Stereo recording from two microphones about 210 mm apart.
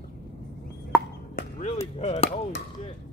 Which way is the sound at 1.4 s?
30° left (ahead or behind).